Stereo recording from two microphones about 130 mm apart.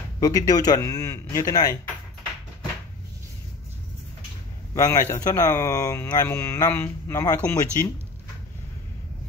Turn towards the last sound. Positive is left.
turn(degrees=25)  # may be behind; listen again after turning